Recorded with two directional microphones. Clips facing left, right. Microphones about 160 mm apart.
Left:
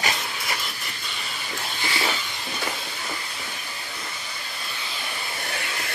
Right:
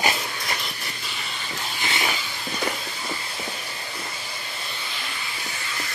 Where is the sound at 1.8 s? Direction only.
20° right (ahead or behind).